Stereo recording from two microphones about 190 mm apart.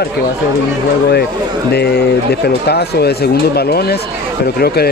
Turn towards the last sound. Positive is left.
turn(degrees=55)  # may be behind; listen again after turning